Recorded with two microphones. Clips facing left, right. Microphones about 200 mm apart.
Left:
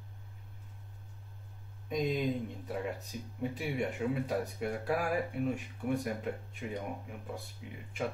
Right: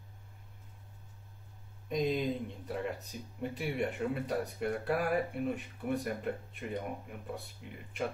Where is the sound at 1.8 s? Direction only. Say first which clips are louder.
Even; centre (ahead or behind).